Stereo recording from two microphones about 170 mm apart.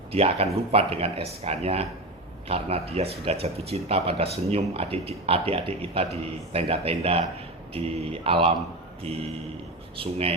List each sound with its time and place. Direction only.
0.1 s speech: 35° right (ahead or behind)
10.0 s speech: 35° right (ahead or behind)